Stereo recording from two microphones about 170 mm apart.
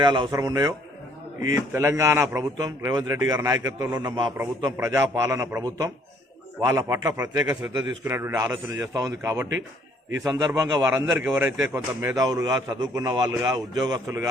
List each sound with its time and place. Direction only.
0.0 s a man's voice: 25° right (ahead or behind)
7.4 s a man's voice: 5° right (ahead or behind)